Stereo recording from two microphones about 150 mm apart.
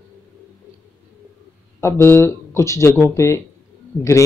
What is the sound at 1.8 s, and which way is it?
Speech, 15° left (ahead or behind).